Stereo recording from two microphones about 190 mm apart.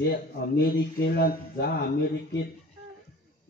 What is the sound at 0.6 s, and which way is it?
Mantra, 60° left (ahead or behind).